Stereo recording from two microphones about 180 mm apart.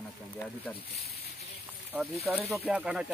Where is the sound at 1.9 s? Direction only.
5° right (ahead or behind).